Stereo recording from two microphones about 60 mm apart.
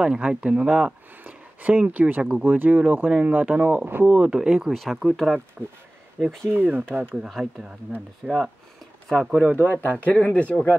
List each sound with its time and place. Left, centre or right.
0.0 s speech: centre
4.1 s speech: centre
6.5 s speech: right
7.2 s speech: centre
8.2 s speech: centre
10.0 s speech: left